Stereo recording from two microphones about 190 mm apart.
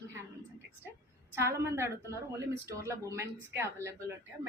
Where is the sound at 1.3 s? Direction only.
15° right (ahead or behind).